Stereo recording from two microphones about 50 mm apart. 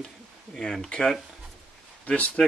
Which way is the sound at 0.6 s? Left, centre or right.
Centre.